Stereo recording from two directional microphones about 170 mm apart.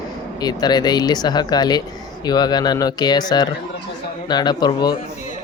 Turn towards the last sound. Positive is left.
turn(degrees=25)  # may be behind; listen again after turning